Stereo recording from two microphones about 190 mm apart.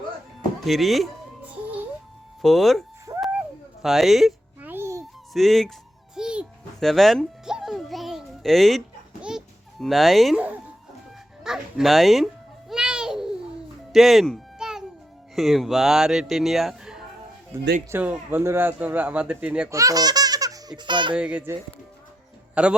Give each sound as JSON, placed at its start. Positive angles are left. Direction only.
{"t": 0.6, "sound": "speech", "side_deg": 0}
{"t": 2.4, "sound": "speech", "side_deg": 0}
{"t": 3.1, "sound": "a sound", "side_deg": -15}
{"t": 3.8, "sound": "babbling", "side_deg": 0}
{"t": 5.3, "sound": "speech", "side_deg": 0}
{"t": 6.1, "sound": "music", "side_deg": -5}
{"t": 9.2, "sound": "babbling", "side_deg": 0}
{"t": 11.4, "sound": "a sound", "side_deg": 0}
{"t": 13.9, "sound": "music", "side_deg": 0}
{"t": 15.4, "sound": "speech", "side_deg": 0}
{"t": 17.5, "sound": "speech", "side_deg": -15}
{"t": 19.7, "sound": "speech", "side_deg": -20}
{"t": 21.2, "sound": "speech", "side_deg": -5}